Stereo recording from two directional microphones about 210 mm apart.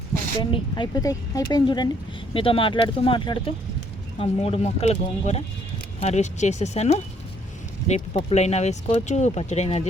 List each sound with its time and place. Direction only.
0.5 s speech: 20° left (ahead or behind)